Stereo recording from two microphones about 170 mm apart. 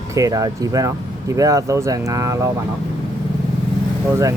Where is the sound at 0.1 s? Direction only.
20° right (ahead or behind).